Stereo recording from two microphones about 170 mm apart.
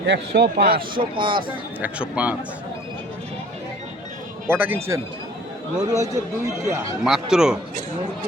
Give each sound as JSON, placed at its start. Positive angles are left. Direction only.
{"t": 0.0, "sound": "speech", "side_deg": -80}
{"t": 0.9, "sound": "speech", "side_deg": -30}
{"t": 1.8, "sound": "speech", "side_deg": -10}
{"t": 4.4, "sound": "speech", "side_deg": -10}
{"t": 7.0, "sound": "a man's voice", "side_deg": -5}